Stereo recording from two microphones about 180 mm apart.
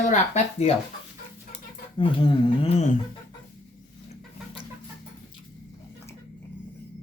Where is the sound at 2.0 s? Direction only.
25° left (ahead or behind).